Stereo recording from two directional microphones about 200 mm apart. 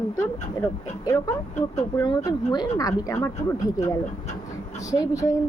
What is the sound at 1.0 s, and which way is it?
A woman's voice, 15° left (ahead or behind).